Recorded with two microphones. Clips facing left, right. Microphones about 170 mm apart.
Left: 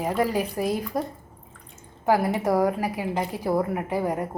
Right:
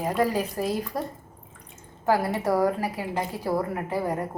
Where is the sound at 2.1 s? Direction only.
15° left (ahead or behind).